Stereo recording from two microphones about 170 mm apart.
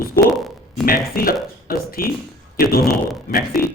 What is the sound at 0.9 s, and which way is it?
Speech, 60° left (ahead or behind).